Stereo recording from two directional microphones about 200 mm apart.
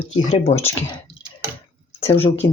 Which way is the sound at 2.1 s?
30° left (ahead or behind).